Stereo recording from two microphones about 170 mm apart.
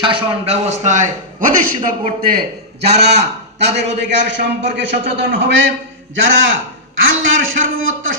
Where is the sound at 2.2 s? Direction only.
60° right (ahead or behind).